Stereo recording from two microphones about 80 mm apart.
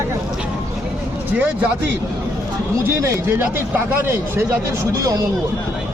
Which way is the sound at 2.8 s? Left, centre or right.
Right.